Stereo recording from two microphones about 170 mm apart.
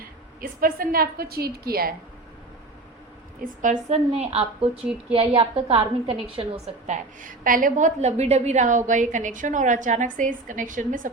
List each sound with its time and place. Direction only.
0.6 s a woman's voice: 60° right (ahead or behind)
3.4 s a woman's voice: 50° right (ahead or behind)
4.8 s a woman's voice: 5° right (ahead or behind)
5.1 s a woman's voice: 30° right (ahead or behind)
6.8 s a woman's voice: 50° right (ahead or behind)